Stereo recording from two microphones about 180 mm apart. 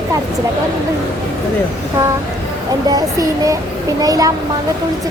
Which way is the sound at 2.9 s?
20° right (ahead or behind).